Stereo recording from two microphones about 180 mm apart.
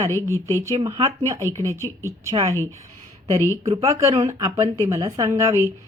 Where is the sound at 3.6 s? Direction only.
20° right (ahead or behind).